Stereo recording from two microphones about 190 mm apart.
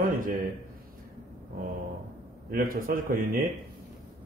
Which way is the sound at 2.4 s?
50° right (ahead or behind).